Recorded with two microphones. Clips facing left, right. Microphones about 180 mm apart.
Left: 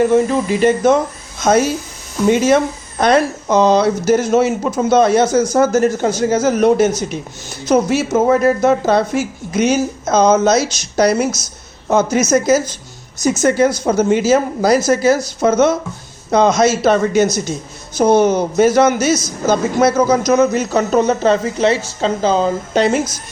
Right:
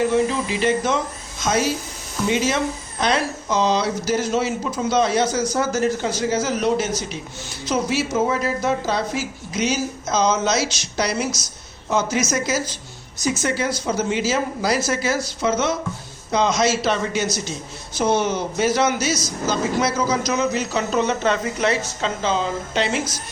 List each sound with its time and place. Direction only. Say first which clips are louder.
0.0 s speech: left 6 dB; 50° left (ahead or behind)